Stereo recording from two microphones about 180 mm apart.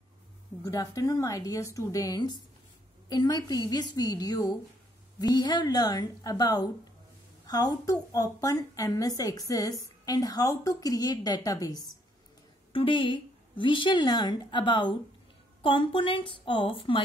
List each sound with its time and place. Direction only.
0.7 s a woman's voice: 20° left (ahead or behind)